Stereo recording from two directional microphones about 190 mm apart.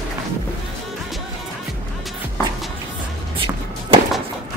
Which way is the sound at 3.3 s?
25° right (ahead or behind).